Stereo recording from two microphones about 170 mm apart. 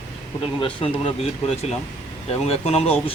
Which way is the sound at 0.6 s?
35° left (ahead or behind).